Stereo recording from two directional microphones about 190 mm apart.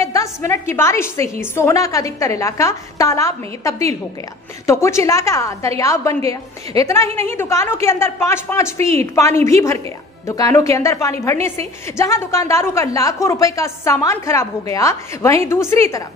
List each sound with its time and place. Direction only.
0.0 s a woman's voice: 15° left (ahead or behind)
8.7 s a woman's voice: 35° right (ahead or behind)
9.1 s a woman's voice: 15° left (ahead or behind)